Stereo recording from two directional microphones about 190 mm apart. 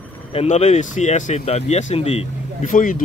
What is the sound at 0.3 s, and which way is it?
Speech, 35° left (ahead or behind).